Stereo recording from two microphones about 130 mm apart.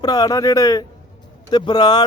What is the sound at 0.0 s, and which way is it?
A man's voice, 30° left (ahead or behind).